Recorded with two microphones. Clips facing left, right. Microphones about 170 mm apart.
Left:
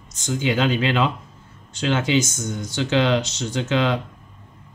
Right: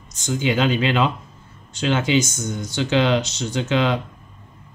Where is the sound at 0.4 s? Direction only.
15° right (ahead or behind).